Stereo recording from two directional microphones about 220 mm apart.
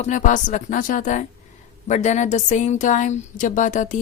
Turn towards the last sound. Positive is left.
turn(degrees=35)  # may be behind; listen again after turning